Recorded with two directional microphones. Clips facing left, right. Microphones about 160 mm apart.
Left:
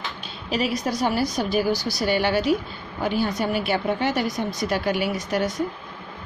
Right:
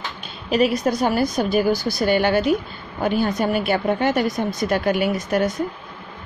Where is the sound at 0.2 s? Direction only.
55° right (ahead or behind).